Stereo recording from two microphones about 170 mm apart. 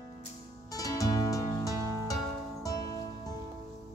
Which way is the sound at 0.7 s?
20° left (ahead or behind).